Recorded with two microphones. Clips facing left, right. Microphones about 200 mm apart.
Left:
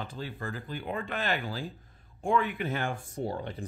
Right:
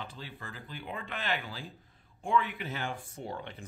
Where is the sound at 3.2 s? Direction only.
35° left (ahead or behind).